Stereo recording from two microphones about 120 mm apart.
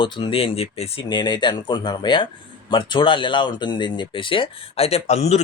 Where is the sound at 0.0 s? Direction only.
45° left (ahead or behind).